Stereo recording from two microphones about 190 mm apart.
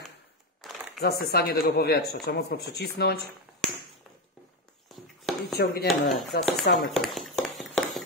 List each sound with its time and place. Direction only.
0.9 s speech: 55° left (ahead or behind)
4.8 s a sound: centre (ahead or behind)
5.6 s speech: 55° left (ahead or behind)
5.9 s speech: centre (ahead or behind)
6.7 s speech: 55° left (ahead or behind)
7.0 s a sound: centre (ahead or behind)